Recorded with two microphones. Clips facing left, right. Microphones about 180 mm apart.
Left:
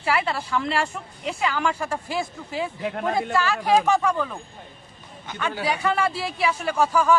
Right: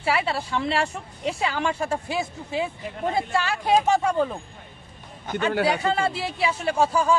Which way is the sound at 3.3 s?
30° right (ahead or behind).